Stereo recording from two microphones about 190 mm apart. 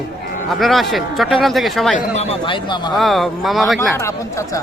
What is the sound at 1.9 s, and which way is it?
A man's voice, 35° left (ahead or behind).